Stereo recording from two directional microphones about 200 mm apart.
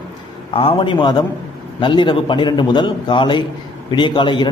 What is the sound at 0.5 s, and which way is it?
A man's voice, 25° left (ahead or behind).